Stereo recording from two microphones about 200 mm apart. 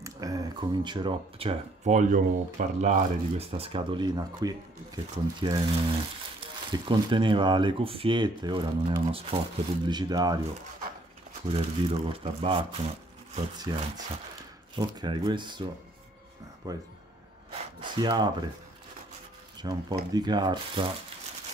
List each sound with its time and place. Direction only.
0.0 s speech: 20° right (ahead or behind)
11.5 s speech: 30° right (ahead or behind)
16.6 s speech: 20° right (ahead or behind)
17.5 s a sound: 25° right (ahead or behind)
19.6 s speech: 20° right (ahead or behind)